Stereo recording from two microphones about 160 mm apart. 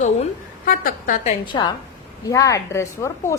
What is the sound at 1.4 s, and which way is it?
A woman's voice, 30° left (ahead or behind).